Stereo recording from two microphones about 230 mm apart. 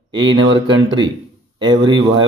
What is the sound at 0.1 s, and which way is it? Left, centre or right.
Speech, right.